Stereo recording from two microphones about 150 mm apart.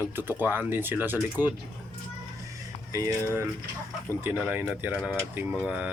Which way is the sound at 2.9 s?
20° right (ahead or behind).